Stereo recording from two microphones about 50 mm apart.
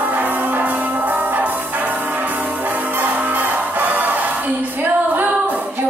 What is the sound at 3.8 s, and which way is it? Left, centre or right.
Music, right.